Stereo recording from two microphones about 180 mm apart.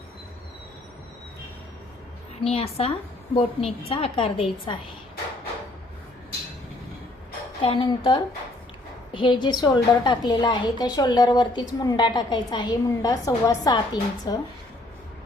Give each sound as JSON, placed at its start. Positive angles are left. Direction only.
{"t": 2.4, "sound": "a woman's voice", "side_deg": 35}
{"t": 7.6, "sound": "a woman's voice", "side_deg": 30}